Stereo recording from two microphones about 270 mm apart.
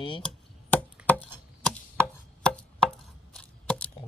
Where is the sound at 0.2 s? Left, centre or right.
Centre.